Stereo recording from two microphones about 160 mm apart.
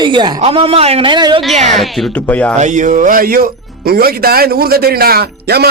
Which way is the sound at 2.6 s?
50° right (ahead or behind).